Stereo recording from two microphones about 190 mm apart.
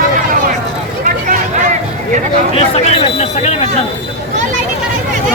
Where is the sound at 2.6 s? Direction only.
30° left (ahead or behind).